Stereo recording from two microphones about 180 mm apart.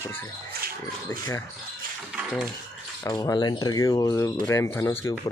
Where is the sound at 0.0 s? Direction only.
15° left (ahead or behind).